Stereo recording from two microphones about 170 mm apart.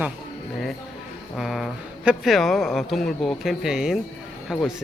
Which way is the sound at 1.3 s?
Centre (ahead or behind).